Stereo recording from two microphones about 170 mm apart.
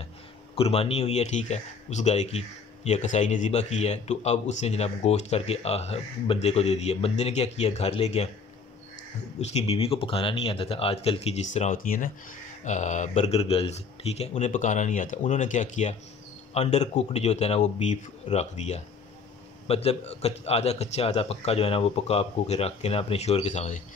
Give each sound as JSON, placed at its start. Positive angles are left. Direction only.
{"t": 0.6, "sound": "speech", "side_deg": 35}
{"t": 9.4, "sound": "speech", "side_deg": 40}
{"t": 11.5, "sound": "a man's voice", "side_deg": 50}